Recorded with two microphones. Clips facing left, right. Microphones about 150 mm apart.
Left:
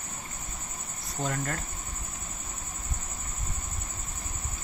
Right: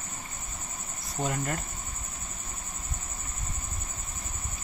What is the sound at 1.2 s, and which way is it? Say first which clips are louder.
Speech: right 1 dB; 10° right (ahead or behind).